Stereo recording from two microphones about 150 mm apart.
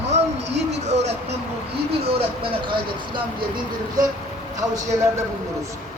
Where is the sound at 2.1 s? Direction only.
35° right (ahead or behind).